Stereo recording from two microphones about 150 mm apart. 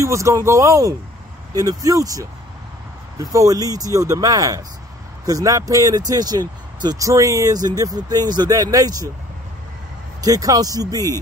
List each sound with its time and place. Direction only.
0.0 s speech: 20° right (ahead or behind)
10.2 s speech: 25° right (ahead or behind)